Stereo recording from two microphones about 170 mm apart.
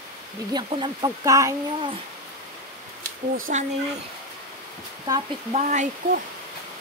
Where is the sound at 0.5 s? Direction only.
25° right (ahead or behind).